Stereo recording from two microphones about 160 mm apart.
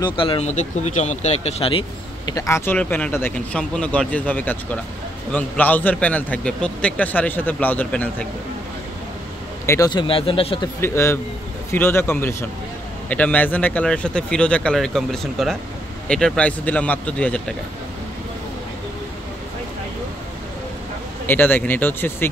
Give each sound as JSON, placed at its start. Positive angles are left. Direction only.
{"t": 0.0, "sound": "speech", "side_deg": 30}
{"t": 0.5, "sound": "speech", "side_deg": 45}
{"t": 2.3, "sound": "a man's voice", "side_deg": 15}
{"t": 9.7, "sound": "speech", "side_deg": 25}
{"t": 10.8, "sound": "a man's voice", "side_deg": 15}
{"t": 21.3, "sound": "a man's voice", "side_deg": 10}